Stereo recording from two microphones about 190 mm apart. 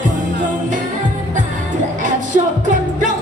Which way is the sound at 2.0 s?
40° right (ahead or behind).